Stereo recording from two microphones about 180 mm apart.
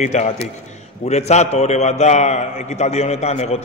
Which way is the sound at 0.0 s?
40° left (ahead or behind).